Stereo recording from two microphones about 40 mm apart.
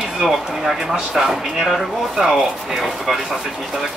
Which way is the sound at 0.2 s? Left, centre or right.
Centre.